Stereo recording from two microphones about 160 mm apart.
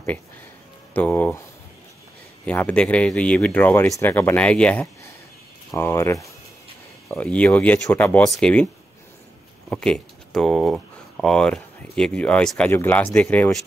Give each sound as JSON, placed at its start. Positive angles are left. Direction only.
{"t": 0.9, "sound": "speech", "side_deg": 10}
{"t": 2.4, "sound": "speech", "side_deg": 10}
{"t": 9.7, "sound": "speech", "side_deg": 5}